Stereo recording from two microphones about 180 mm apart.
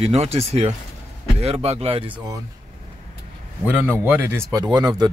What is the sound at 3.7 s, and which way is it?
Speech, 10° right (ahead or behind).